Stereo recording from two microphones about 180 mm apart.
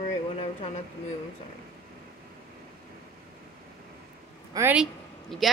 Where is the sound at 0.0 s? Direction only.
35° left (ahead or behind).